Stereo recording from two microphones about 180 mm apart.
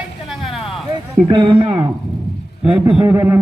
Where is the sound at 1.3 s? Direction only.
25° right (ahead or behind).